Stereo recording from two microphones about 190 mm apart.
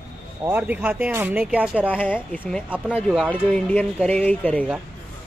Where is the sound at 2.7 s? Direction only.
5° right (ahead or behind).